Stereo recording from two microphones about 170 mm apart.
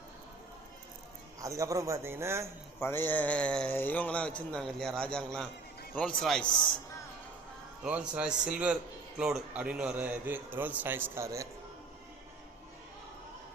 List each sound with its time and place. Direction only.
1.4 s a man's voice: 20° right (ahead or behind)
2.8 s a man's voice: 10° left (ahead or behind)
7.9 s a man's voice: 5° right (ahead or behind)